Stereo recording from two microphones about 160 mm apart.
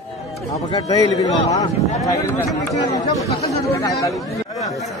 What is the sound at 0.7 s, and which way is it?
A man's voice, 25° left (ahead or behind).